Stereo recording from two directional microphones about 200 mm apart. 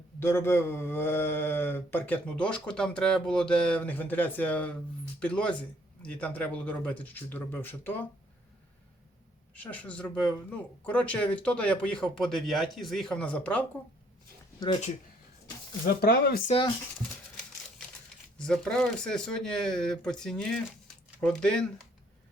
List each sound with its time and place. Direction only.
0.2 s speech: 10° left (ahead or behind)
9.6 s speech: 5° left (ahead or behind)
14.6 s speech: 20° left (ahead or behind)
16.0 s speech: 50° left (ahead or behind)
16.5 s speech: 25° left (ahead or behind)
18.3 s speech: 5° left (ahead or behind)